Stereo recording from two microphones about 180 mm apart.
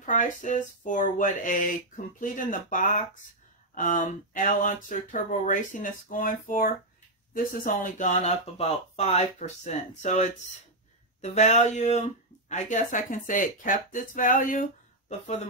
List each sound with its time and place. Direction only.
0.0 s speech: 45° left (ahead or behind)